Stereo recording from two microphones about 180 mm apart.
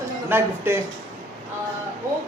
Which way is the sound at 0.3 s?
10° right (ahead or behind).